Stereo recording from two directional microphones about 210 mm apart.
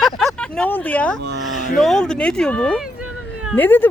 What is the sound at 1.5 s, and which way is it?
Speech, 35° left (ahead or behind).